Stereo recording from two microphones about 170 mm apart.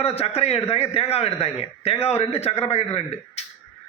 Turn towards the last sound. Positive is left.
turn(degrees=40)  # may be behind; listen again after turning